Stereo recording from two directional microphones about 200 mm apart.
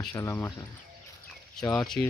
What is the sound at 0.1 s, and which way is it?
Speech, 15° left (ahead or behind).